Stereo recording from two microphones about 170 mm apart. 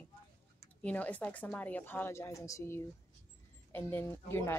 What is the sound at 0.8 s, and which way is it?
Speech, 10° left (ahead or behind).